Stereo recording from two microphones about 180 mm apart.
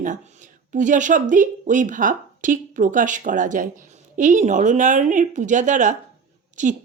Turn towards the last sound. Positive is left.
turn(degrees=-45)  # may be behind; listen again after turning